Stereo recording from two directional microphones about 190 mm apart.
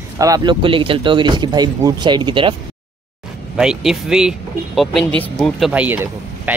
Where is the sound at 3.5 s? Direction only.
5° right (ahead or behind).